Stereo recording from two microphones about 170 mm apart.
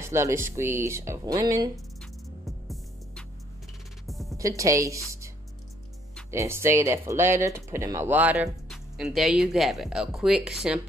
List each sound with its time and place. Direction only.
0.0 s speech: 15° right (ahead or behind)
2.0 s music: centre (ahead or behind)
4.4 s a woman's voice: 20° right (ahead or behind)
6.3 s speech: 15° right (ahead or behind)